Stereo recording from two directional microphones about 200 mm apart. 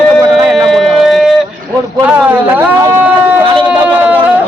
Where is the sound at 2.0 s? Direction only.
10° right (ahead or behind).